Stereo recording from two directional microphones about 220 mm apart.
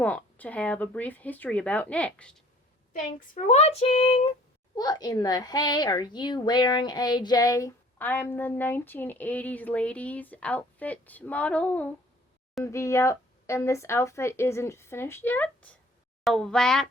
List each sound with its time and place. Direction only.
0.0 s speech: 5° left (ahead or behind)
3.2 s speech: 30° left (ahead or behind); by 16.8 s 5° left (ahead or behind)